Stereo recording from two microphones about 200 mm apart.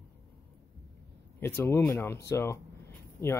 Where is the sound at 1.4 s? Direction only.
10° left (ahead or behind).